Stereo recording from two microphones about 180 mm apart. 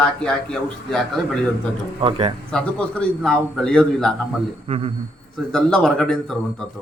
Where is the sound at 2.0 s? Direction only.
30° right (ahead or behind).